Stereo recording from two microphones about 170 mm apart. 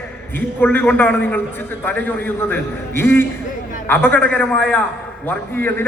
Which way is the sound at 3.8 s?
10° left (ahead or behind).